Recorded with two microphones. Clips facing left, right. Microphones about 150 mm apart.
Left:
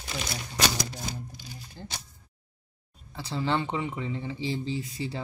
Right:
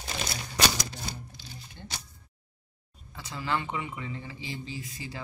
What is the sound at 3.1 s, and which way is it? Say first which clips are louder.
Speech: left 4 dB; 30° left (ahead or behind).